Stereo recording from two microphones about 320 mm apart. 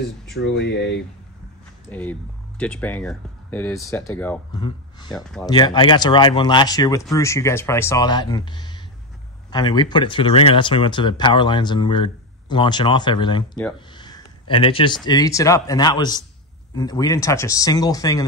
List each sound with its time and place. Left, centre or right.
0.3 s speech: left
1.9 s speech: centre